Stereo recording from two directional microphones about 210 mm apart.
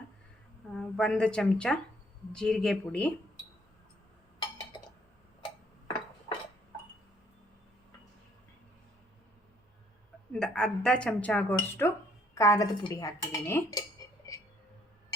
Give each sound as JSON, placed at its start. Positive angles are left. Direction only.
{"t": 0.7, "sound": "a woman's voice", "side_deg": 0}
{"t": 10.3, "sound": "a woman's voice", "side_deg": 5}